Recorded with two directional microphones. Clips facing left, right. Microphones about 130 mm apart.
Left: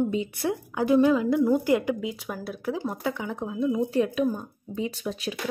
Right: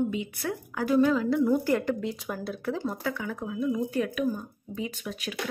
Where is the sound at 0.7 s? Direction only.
20° left (ahead or behind).